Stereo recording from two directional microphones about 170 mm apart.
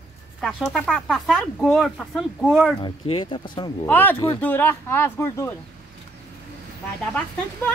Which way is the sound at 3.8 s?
10° left (ahead or behind).